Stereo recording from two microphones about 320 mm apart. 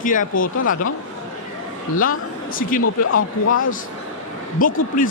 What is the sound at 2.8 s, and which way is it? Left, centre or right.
Speech, left.